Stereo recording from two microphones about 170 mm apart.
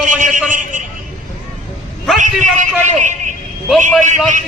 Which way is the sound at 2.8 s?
45° right (ahead or behind).